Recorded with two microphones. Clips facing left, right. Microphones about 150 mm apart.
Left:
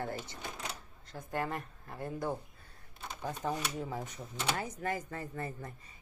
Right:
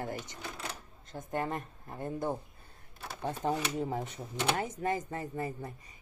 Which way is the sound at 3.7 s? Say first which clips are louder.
Right 5 dB; 30° right (ahead or behind).